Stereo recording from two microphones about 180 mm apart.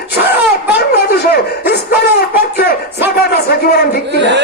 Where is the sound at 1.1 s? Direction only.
60° left (ahead or behind).